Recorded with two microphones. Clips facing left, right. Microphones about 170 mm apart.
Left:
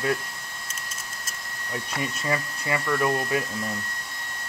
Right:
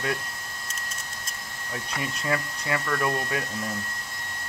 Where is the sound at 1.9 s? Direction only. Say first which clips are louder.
Even; centre (ahead or behind).